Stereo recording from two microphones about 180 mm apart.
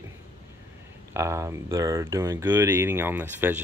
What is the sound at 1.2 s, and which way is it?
Speech, 15° right (ahead or behind).